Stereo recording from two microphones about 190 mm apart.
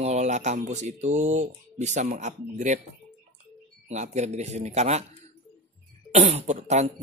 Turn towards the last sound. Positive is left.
turn(degrees=-35)  # may be behind; listen again after turning